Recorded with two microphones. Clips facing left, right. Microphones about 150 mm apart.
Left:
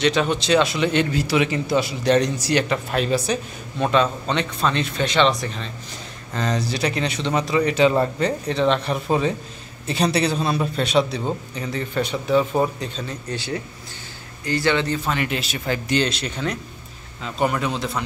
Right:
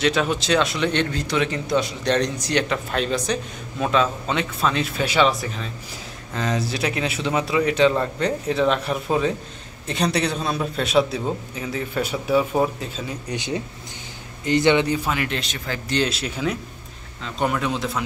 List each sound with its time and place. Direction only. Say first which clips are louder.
0.0 s a man's voice: left 1 dB; centre (ahead or behind); by 15.0 s 15° right (ahead or behind)
15.0 s a man's voice: left 1 dB; centre (ahead or behind)